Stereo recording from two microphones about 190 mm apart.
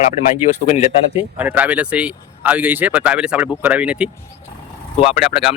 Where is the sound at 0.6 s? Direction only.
35° left (ahead or behind).